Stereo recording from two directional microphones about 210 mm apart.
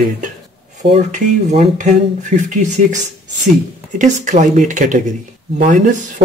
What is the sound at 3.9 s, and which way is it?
Speech, 35° right (ahead or behind).